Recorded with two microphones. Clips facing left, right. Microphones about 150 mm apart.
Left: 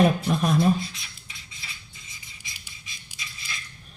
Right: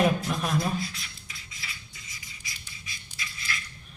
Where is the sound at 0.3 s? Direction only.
30° left (ahead or behind).